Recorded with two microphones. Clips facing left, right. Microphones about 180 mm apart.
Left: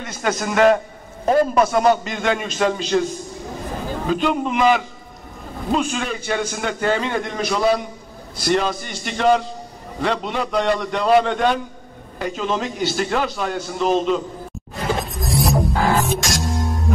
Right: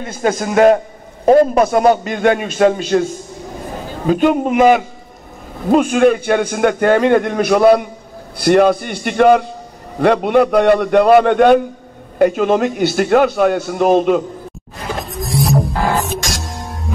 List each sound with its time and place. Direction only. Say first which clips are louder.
0.0 s a man's voice: right 5 dB; 50° right (ahead or behind)
4.1 s a man's voice: right 7 dB; 50° right (ahead or behind)
15.0 s a sound: right 3 dB; centre (ahead or behind)
16.0 s music: even; centre (ahead or behind)